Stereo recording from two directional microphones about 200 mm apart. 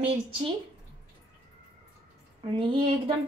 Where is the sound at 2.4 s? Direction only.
25° right (ahead or behind).